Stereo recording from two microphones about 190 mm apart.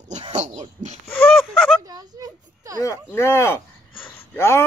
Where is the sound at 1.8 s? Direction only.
20° right (ahead or behind).